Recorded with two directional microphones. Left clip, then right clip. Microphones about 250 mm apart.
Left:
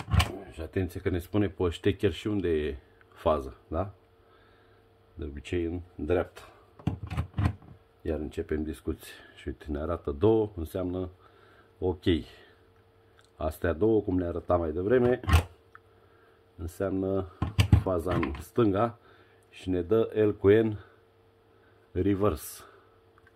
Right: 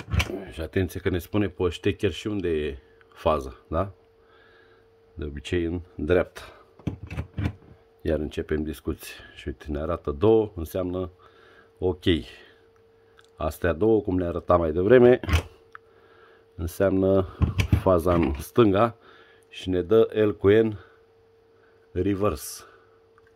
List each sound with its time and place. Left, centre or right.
0.3 s speech: right
5.2 s speech: right
7.1 s a sound: centre
8.0 s speech: right
15.7 s a sound: right
16.5 s speech: right
21.9 s speech: centre